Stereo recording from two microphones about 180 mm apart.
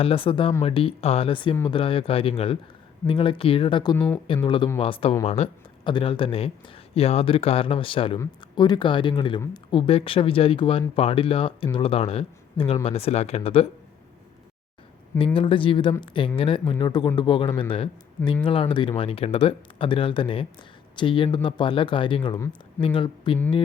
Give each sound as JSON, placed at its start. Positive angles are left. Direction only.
{"t": 0.0, "sound": "speech", "side_deg": 30}
{"t": 3.9, "sound": "speech", "side_deg": 10}
{"t": 4.4, "sound": "speech", "side_deg": 25}
{"t": 15.4, "sound": "speech", "side_deg": 30}